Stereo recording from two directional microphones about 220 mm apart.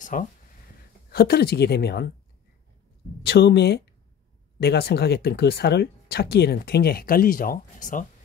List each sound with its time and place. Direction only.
0.0 s speech: 35° left (ahead or behind)
3.2 s speech: 45° left (ahead or behind)